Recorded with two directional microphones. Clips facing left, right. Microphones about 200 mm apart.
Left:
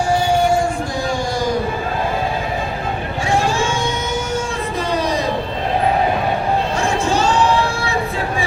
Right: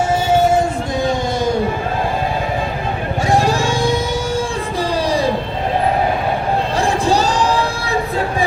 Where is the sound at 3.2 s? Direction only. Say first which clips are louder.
Right 2 dB; 40° right (ahead or behind).